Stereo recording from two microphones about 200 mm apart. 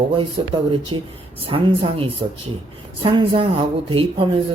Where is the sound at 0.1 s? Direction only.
25° right (ahead or behind).